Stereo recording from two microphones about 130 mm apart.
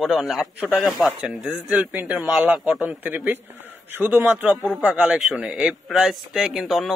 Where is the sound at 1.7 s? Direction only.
10° right (ahead or behind).